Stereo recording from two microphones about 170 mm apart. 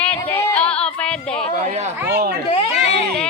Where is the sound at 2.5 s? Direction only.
35° left (ahead or behind).